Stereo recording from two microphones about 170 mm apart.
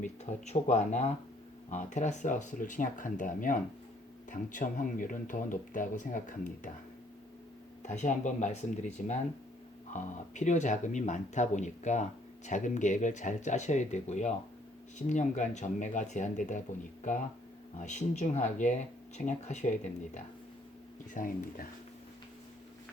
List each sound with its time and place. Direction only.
0.0 s speech: 40° left (ahead or behind)
7.8 s speech: 45° left (ahead or behind)